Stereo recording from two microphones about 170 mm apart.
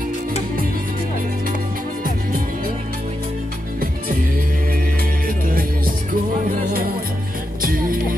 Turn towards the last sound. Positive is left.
turn(degrees=-55)  # may be behind; listen again after turning